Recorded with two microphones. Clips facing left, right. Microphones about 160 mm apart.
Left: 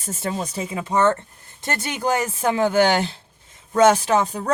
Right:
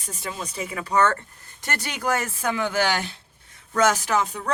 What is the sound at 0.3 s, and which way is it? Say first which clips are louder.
Speech: left 5 dB; 35° left (ahead or behind).